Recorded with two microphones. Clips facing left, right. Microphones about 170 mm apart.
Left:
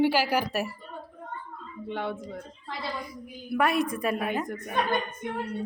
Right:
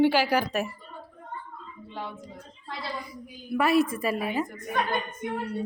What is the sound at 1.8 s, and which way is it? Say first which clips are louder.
Speech: left 6 dB; 65° left (ahead or behind).